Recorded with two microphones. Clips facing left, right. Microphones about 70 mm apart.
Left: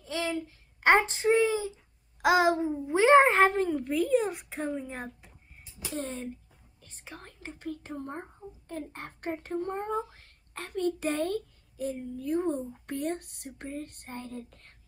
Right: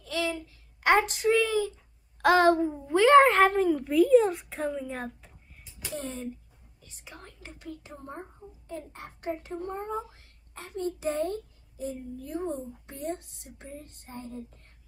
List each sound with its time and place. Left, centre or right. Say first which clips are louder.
0.0 s a sound: right 1 dB; left
2.2 s a sound: right 3 dB; centre
3.4 s a child's voice: right 2 dB; centre
5.9 s a child's voice: even; left
10.2 s a child's voice: left 3 dB; left
13.6 s speech: left 5 dB; left